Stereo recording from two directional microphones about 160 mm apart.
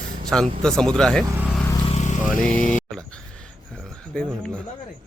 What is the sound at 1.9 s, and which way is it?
Vehicle, 50° left (ahead or behind).